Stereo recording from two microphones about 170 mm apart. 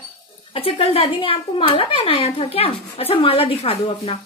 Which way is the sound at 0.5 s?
35° left (ahead or behind).